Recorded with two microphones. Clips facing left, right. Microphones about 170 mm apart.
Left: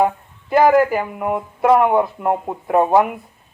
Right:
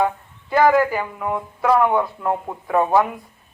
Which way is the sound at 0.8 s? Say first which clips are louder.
Left 3 dB; 15° left (ahead or behind).